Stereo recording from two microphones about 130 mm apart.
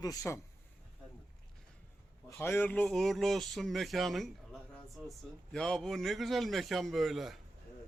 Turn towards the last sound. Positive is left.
turn(degrees=0)  # may be behind; listen again after turning